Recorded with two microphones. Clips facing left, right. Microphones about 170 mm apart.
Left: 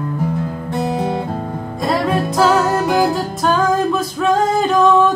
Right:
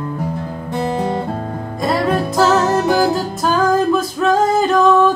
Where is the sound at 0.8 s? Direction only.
5° left (ahead or behind).